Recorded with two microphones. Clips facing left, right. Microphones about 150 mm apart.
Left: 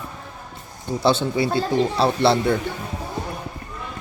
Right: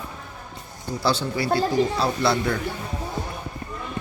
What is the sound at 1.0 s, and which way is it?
Speech, 20° left (ahead or behind).